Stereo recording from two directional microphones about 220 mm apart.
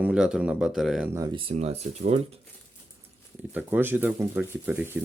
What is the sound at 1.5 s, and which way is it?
Speech, 30° right (ahead or behind).